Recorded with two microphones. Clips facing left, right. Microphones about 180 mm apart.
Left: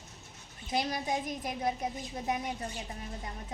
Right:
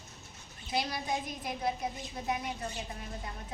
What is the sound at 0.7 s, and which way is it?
Speech, 45° left (ahead or behind).